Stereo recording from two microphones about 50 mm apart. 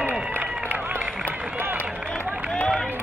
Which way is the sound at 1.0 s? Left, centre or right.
Centre.